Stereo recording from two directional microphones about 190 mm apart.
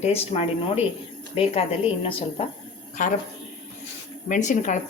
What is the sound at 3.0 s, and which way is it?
Speech, 45° left (ahead or behind).